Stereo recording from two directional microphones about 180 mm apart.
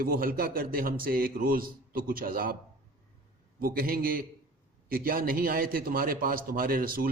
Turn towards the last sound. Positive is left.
turn(degrees=-55)  # may be behind; listen again after turning